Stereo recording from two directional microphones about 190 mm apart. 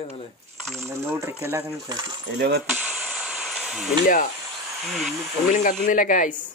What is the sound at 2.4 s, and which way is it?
Speech, 60° right (ahead or behind).